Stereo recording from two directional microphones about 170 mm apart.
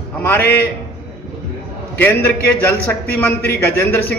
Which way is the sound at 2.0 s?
15° left (ahead or behind).